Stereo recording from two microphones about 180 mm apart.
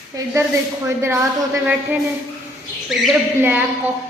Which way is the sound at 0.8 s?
15° right (ahead or behind).